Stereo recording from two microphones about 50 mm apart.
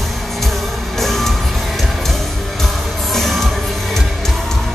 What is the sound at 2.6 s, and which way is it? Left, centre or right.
Music, centre.